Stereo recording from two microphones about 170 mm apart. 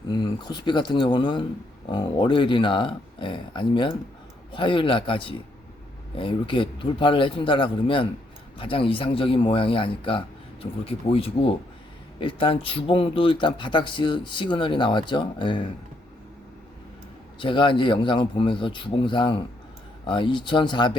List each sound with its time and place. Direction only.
0.1 s speech: 25° left (ahead or behind)
17.4 s speech: 30° left (ahead or behind)